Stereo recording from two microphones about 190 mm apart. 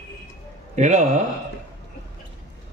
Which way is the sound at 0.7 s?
40° right (ahead or behind).